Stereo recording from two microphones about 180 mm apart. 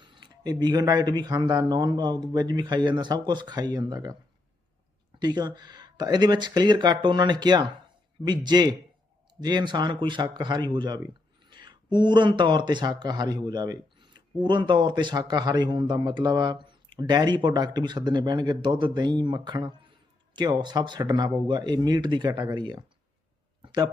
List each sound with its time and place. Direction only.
0.0 s speech: 25° right (ahead or behind)
5.2 s speech: 20° right (ahead or behind)